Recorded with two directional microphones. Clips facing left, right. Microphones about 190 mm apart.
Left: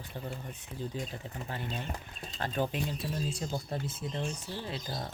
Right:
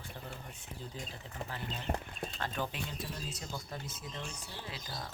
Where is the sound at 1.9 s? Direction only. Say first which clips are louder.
Right 4 dB; 60° right (ahead or behind).